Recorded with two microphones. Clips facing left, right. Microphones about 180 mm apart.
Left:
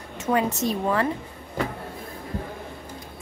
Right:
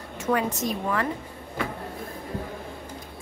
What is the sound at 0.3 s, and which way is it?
Speech, 25° left (ahead or behind).